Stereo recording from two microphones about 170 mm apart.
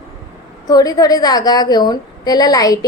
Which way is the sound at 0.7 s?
20° left (ahead or behind).